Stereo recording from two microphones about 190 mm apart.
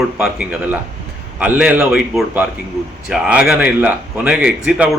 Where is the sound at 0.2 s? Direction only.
5° right (ahead or behind).